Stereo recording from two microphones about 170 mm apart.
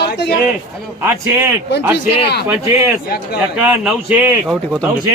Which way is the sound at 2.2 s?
75° left (ahead or behind).